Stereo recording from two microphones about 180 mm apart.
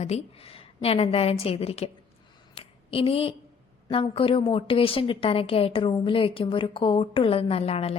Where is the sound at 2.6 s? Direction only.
30° left (ahead or behind).